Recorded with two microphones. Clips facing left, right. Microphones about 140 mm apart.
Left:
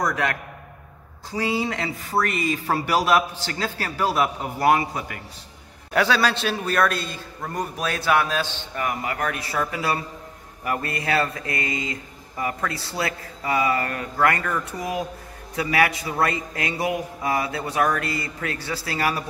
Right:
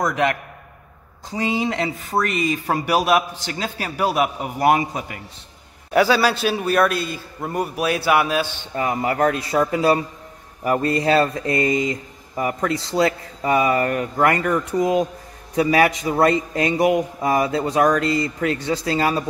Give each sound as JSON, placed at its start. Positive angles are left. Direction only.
{"t": 0.0, "sound": "a man's voice", "side_deg": -20}
{"t": 5.9, "sound": "speech", "side_deg": -5}
{"t": 8.7, "sound": "a man's voice", "side_deg": -25}